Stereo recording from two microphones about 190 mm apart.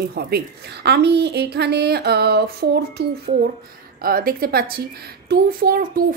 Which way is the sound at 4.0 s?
50° right (ahead or behind).